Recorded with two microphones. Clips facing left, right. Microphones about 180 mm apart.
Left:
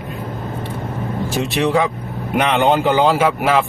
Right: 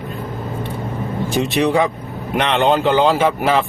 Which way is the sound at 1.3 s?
Centre (ahead or behind).